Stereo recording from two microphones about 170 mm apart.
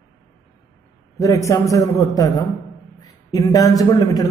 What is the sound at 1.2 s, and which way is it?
A man's voice, 20° left (ahead or behind).